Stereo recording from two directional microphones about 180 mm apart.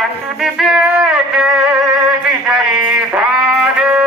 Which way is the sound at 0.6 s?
5° right (ahead or behind).